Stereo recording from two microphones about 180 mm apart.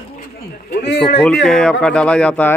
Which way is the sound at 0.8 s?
70° left (ahead or behind).